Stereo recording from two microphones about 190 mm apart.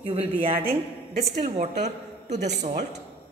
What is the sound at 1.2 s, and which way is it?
Speech, 55° right (ahead or behind).